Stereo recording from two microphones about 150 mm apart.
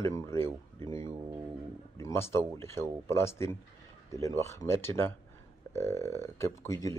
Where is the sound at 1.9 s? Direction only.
20° left (ahead or behind).